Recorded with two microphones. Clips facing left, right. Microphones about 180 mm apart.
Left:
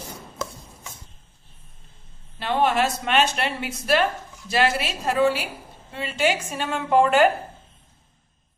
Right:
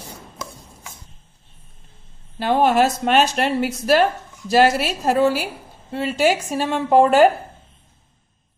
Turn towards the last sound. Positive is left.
turn(degrees=-40)  # may be behind; listen again after turning